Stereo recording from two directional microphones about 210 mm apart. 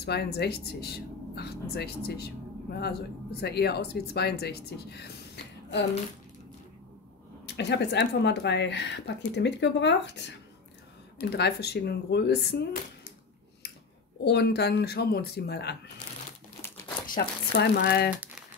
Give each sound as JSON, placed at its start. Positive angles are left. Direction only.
{"t": 0.0, "sound": "speech", "side_deg": 50}
{"t": 7.4, "sound": "speech", "side_deg": 55}
{"t": 14.2, "sound": "speech", "side_deg": 50}
{"t": 17.0, "sound": "speech", "side_deg": 45}